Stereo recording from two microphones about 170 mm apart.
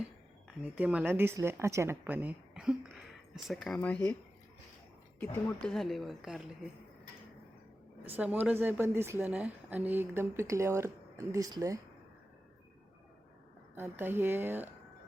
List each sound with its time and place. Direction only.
0.4 s a woman's voice: 5° right (ahead or behind)
5.2 s speech: 10° left (ahead or behind)
8.1 s a woman's voice: 10° right (ahead or behind)
13.7 s a woman's voice: 15° right (ahead or behind)